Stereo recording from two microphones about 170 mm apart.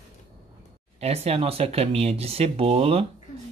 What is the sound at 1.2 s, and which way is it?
Speech, 35° right (ahead or behind).